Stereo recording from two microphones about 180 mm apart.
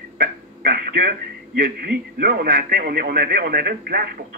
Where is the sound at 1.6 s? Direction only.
55° right (ahead or behind).